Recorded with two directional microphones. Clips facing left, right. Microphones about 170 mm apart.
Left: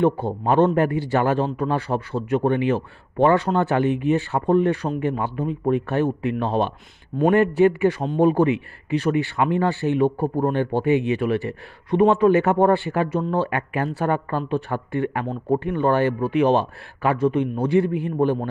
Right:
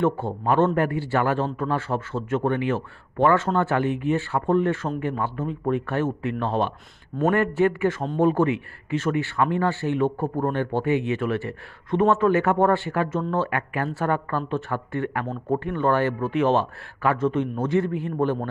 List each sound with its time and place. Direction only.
0.0 s speech: 15° left (ahead or behind)